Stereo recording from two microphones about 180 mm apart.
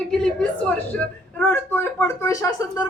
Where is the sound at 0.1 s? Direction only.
5° left (ahead or behind).